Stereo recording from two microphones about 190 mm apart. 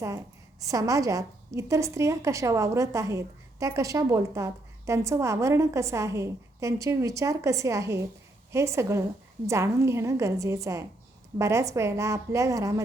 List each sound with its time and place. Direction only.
0.0 s a woman's voice: 15° right (ahead or behind)